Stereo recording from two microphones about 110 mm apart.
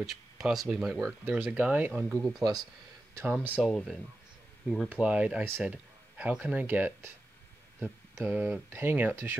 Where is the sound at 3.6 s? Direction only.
5° left (ahead or behind).